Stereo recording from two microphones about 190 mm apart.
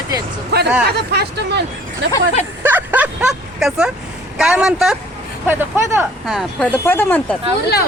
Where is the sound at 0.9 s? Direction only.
60° right (ahead or behind).